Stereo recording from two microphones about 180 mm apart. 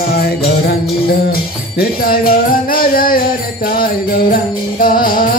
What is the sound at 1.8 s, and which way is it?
Music, 55° left (ahead or behind).